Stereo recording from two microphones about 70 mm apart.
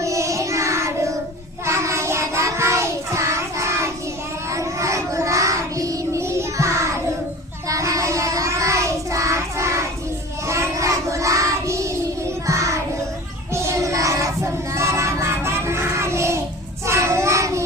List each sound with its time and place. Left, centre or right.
0.0 s child singing: right
12.5 s music: right
13.5 s child singing: right